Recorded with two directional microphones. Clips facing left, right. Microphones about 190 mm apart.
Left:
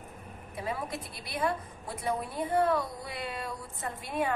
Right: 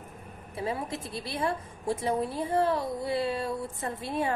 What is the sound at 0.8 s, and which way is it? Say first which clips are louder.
A woman's voice: right 4 dB; 25° right (ahead or behind).